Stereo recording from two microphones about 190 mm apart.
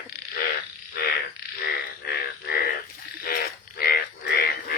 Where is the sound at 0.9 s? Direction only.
50° left (ahead or behind).